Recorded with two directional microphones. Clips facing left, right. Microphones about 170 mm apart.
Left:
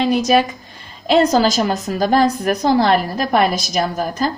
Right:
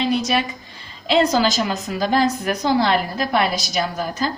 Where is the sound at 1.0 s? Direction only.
45° left (ahead or behind).